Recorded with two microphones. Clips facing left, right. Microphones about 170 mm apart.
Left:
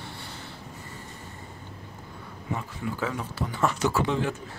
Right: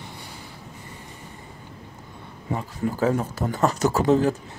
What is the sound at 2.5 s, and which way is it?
Speech, 40° right (ahead or behind).